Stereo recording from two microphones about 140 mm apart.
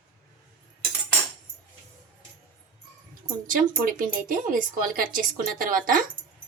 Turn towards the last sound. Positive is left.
turn(degrees=-85)